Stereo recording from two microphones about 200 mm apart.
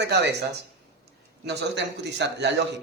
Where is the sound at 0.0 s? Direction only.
55° right (ahead or behind).